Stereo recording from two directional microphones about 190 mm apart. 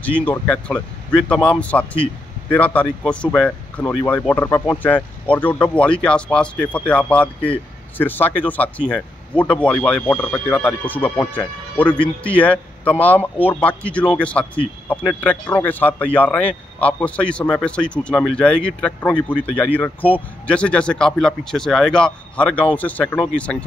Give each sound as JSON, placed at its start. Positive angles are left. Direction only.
{"t": 0.2, "sound": "speech", "side_deg": 10}
{"t": 12.0, "sound": "speech", "side_deg": 25}
{"t": 12.4, "sound": "a man's voice", "side_deg": 5}